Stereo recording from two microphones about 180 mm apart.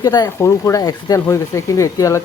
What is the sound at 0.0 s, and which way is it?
Speech, 20° left (ahead or behind).